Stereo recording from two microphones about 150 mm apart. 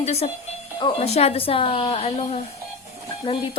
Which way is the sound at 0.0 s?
45° left (ahead or behind).